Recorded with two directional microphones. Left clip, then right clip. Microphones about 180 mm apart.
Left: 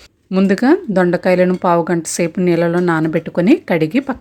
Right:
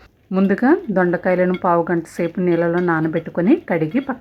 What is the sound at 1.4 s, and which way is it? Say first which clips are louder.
A woman's voice: left 3 dB; 45° left (ahead or behind).